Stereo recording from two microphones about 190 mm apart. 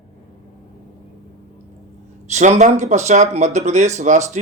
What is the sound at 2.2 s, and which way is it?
Speech, 35° right (ahead or behind).